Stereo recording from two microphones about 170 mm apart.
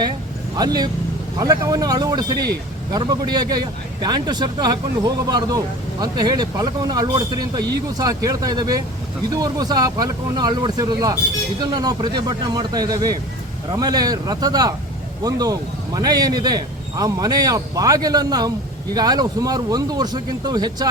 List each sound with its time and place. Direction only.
0.5 s a man's voice: 25° right (ahead or behind)